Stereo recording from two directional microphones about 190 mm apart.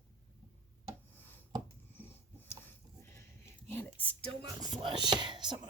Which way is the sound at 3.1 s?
10° left (ahead or behind).